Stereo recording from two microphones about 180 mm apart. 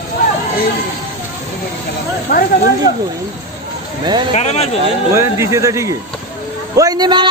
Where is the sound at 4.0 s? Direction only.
25° right (ahead or behind).